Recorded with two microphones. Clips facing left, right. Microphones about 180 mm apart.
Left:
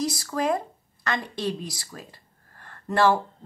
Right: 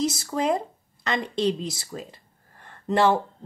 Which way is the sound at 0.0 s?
25° right (ahead or behind).